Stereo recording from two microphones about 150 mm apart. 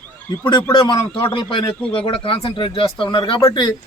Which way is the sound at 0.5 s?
30° left (ahead or behind).